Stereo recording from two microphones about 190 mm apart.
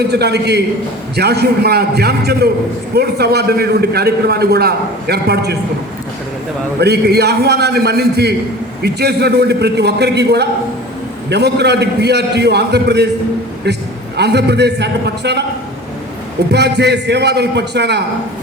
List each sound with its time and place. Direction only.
0.1 s a man's voice: 60° right (ahead or behind)
6.7 s a man's voice: 60° right (ahead or behind)
14.2 s a man's voice: 60° right (ahead or behind)
16.5 s a man's voice: 60° right (ahead or behind)